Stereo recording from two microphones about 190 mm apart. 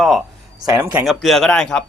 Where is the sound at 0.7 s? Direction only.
15° right (ahead or behind).